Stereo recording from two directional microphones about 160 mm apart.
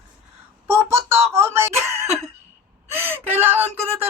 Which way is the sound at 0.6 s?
15° right (ahead or behind).